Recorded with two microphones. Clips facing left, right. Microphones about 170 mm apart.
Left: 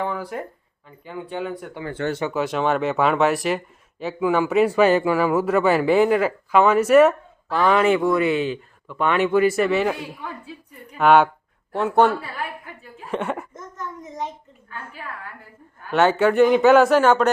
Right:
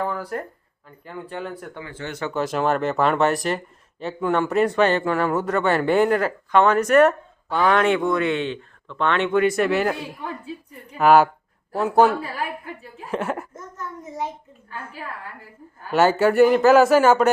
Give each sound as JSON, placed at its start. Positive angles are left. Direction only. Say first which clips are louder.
{"t": 0.0, "sound": "speech", "louder": "even", "side_deg": 0}
{"t": 13.1, "sound": "a sound", "louder": "even", "side_deg": 0}
{"t": 15.9, "sound": "speech", "louder": "even", "side_deg": -5}